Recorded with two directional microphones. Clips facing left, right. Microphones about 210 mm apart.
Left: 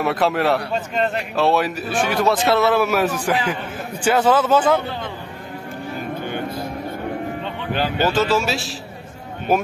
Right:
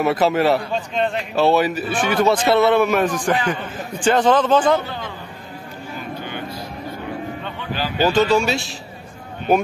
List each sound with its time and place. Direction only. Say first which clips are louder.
0.0 s speech: right 2 dB; centre (ahead or behind)
6.2 s a sound: left 4 dB; 50° left (ahead or behind)
8.1 s speech: right 2 dB; 5° left (ahead or behind)